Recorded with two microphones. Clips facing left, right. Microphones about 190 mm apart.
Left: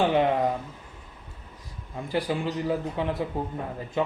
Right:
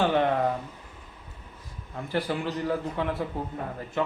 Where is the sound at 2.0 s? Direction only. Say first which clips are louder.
Left 1 dB; 15° left (ahead or behind).